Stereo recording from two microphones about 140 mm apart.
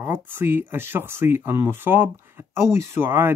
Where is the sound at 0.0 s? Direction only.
15° right (ahead or behind).